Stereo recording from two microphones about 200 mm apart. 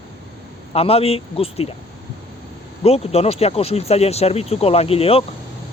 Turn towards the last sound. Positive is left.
turn(degrees=30)  # may be behind; listen again after turning